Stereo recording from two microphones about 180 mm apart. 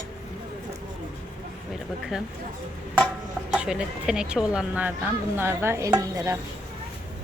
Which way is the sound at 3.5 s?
5° right (ahead or behind).